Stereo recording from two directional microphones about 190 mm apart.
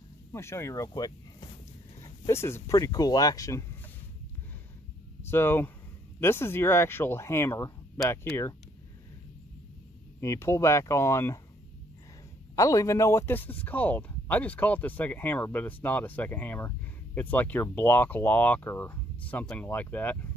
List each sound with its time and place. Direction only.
0.3 s speech: 15° left (ahead or behind)
5.2 s speech: 10° left (ahead or behind)
10.2 s speech: 15° left (ahead or behind)
12.5 s speech: 15° left (ahead or behind)